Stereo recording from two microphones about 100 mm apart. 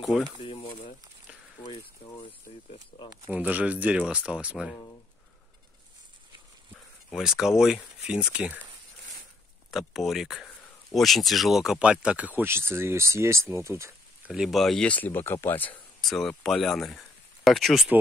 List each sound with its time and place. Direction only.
0.1 s speech: 5° right (ahead or behind)
1.6 s speech: 60° left (ahead or behind)
2.9 s speech: 50° left (ahead or behind)
3.3 s speech: 15° right (ahead or behind)
7.2 s speech: 5° right (ahead or behind)
9.7 s speech: centre (ahead or behind); by 13.9 s 30° right (ahead or behind)
14.2 s speech: 5° right (ahead or behind)
14.9 s speech: 20° left (ahead or behind)
16.0 s speech: centre (ahead or behind)